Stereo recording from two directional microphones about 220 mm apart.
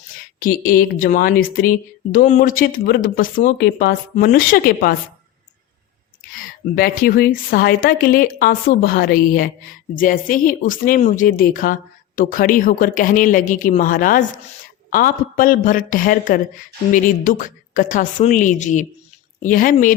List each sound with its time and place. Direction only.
0.3 s speech: 40° left (ahead or behind)
6.4 s speech: 40° left (ahead or behind)